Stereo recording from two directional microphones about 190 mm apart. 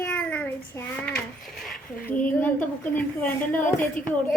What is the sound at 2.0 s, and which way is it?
A child's voice, 10° left (ahead or behind).